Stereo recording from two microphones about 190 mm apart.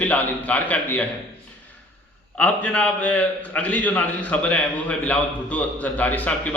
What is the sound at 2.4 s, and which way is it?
A man's voice, 5° left (ahead or behind).